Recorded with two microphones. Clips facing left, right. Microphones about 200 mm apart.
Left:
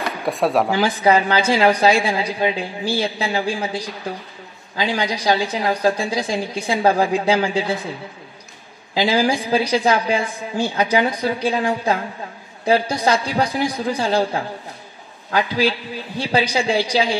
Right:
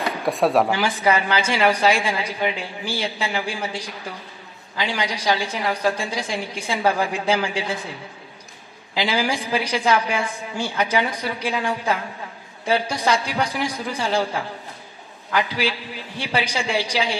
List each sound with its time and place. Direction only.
0.2 s speech: centre (ahead or behind)
0.7 s a woman's voice: 35° left (ahead or behind)
8.9 s a woman's voice: 35° left (ahead or behind)